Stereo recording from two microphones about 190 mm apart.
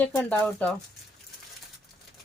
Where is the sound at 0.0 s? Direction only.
5° left (ahead or behind).